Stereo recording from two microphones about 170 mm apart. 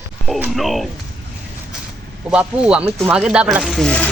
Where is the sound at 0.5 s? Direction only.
Centre (ahead or behind).